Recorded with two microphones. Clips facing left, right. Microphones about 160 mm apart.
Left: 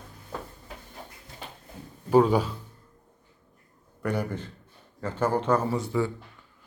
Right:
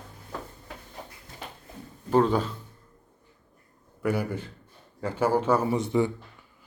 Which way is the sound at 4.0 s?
5° right (ahead or behind).